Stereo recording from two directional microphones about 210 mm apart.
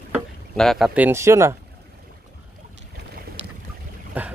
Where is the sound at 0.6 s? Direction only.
Centre (ahead or behind).